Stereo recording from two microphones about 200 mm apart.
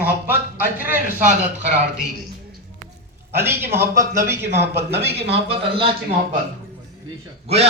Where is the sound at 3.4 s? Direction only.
10° right (ahead or behind).